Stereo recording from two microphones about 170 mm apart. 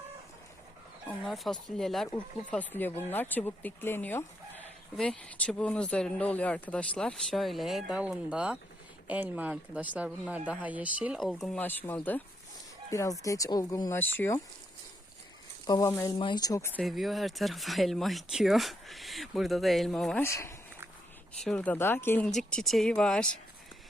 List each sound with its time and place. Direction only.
1.0 s speech: centre (ahead or behind)
15.6 s speech: 20° left (ahead or behind)
16.8 s speech: centre (ahead or behind)
20.2 s speech: 15° left (ahead or behind)
21.4 s speech: 5° left (ahead or behind)